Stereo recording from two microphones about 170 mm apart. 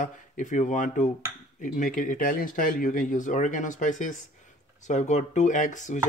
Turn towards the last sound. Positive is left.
turn(degrees=45)  # may be behind; listen again after turning